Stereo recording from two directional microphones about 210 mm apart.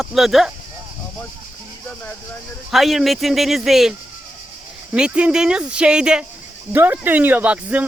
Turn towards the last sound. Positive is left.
turn(degrees=-10)  # may be behind; listen again after turning